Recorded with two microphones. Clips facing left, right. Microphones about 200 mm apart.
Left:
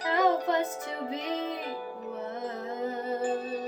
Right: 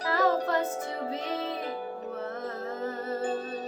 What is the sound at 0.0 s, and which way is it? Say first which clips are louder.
Music: even; 20° left (ahead or behind).